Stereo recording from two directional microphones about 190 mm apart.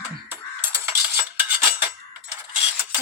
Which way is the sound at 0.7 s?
10° right (ahead or behind).